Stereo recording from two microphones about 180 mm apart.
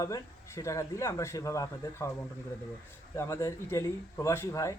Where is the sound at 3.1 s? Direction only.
15° left (ahead or behind).